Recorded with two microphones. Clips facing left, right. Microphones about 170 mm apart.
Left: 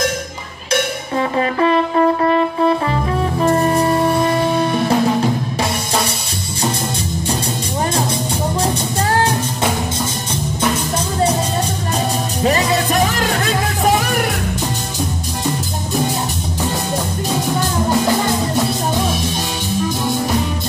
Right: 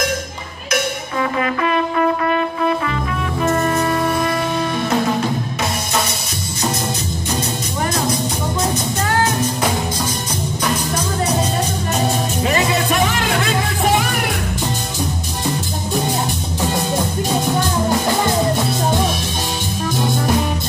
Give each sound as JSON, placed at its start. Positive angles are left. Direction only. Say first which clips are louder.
{"t": 1.4, "sound": "music", "louder": "left 5 dB", "side_deg": 30}
{"t": 12.4, "sound": "music", "louder": "left 3 dB", "side_deg": 35}